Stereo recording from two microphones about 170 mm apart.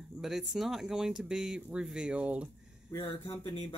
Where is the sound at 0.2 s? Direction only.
5° right (ahead or behind).